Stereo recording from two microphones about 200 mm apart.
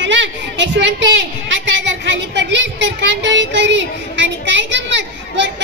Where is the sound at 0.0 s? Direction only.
65° right (ahead or behind).